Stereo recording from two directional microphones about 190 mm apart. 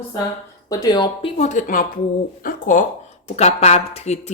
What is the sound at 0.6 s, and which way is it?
A woman's voice, 20° left (ahead or behind).